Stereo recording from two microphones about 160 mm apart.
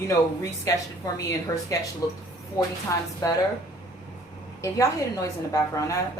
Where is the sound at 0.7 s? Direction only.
20° left (ahead or behind).